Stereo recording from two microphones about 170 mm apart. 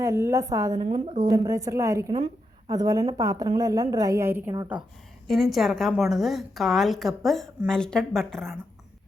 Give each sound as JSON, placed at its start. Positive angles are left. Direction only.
{"t": 0.0, "sound": "a woman's voice", "side_deg": -15}
{"t": 0.9, "sound": "speech", "side_deg": -35}
{"t": 1.3, "sound": "a woman's voice", "side_deg": -20}
{"t": 5.3, "sound": "a woman's voice", "side_deg": 0}